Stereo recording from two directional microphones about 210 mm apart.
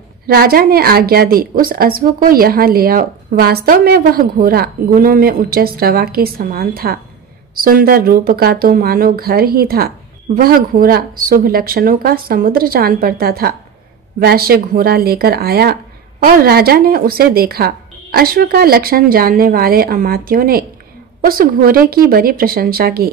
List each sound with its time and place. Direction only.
0.3 s speech: 45° right (ahead or behind)